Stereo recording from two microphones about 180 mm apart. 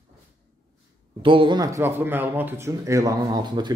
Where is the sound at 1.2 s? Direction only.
30° right (ahead or behind).